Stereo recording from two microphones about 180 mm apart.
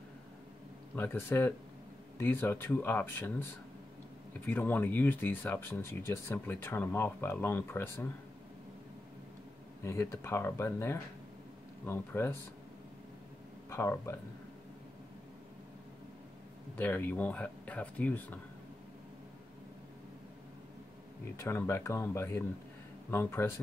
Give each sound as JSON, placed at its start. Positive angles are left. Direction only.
{"t": 0.9, "sound": "speech", "side_deg": 10}
{"t": 4.5, "sound": "speech", "side_deg": 10}
{"t": 9.8, "sound": "speech", "side_deg": 15}
{"t": 13.7, "sound": "speech", "side_deg": 15}
{"t": 16.7, "sound": "speech", "side_deg": 10}
{"t": 21.4, "sound": "speech", "side_deg": 15}